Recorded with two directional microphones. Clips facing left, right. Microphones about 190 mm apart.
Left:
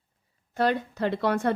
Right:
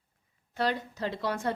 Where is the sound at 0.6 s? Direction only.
55° left (ahead or behind).